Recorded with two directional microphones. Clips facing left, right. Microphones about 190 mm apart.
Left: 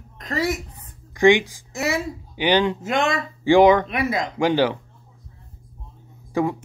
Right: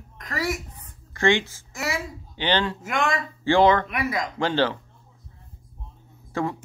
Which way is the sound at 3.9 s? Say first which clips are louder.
Left 3 dB; 25° left (ahead or behind).